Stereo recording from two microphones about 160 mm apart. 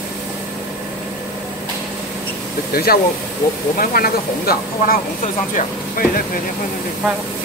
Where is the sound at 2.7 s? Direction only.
70° left (ahead or behind).